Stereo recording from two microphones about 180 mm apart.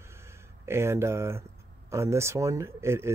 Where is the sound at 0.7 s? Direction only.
15° right (ahead or behind).